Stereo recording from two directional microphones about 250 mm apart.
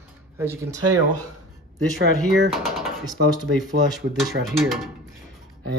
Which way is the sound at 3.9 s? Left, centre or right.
Centre.